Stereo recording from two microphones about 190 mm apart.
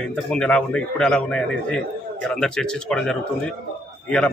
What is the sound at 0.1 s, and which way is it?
A man's voice, 5° left (ahead or behind).